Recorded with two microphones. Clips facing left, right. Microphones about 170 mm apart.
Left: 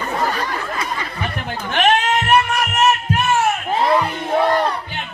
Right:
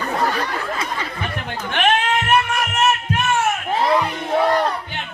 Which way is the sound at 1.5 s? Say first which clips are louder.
Left 2 dB; 40° left (ahead or behind).